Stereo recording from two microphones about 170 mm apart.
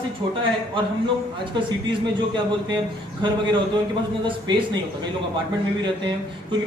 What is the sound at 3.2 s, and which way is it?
Speech, 30° right (ahead or behind).